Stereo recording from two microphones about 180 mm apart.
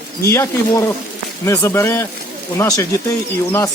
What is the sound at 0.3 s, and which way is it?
A man's voice, 15° left (ahead or behind).